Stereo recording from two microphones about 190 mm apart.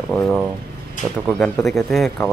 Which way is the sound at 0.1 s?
Centre (ahead or behind).